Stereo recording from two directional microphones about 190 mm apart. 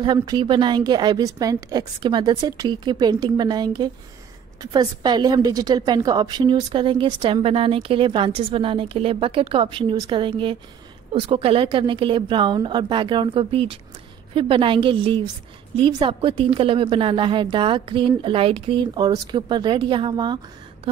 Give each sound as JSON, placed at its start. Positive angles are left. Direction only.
{"t": 0.0, "sound": "a woman's voice", "side_deg": -25}